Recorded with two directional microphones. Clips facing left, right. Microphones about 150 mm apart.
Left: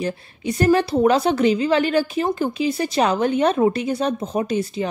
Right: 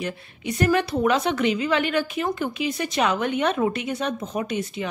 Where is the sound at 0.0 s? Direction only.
35° left (ahead or behind).